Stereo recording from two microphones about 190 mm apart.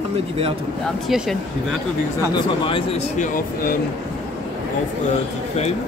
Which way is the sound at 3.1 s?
50° left (ahead or behind).